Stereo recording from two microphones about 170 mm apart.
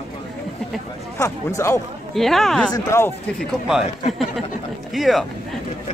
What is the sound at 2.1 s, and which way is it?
Speech, centre (ahead or behind).